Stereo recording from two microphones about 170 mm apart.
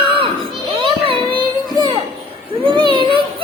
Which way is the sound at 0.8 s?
30° right (ahead or behind).